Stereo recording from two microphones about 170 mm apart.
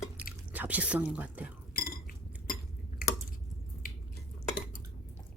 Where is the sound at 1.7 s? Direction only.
60° left (ahead or behind).